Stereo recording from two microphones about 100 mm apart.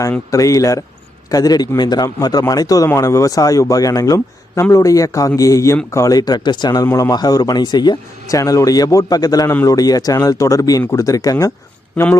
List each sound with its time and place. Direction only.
0.3 s a man's voice: 35° left (ahead or behind)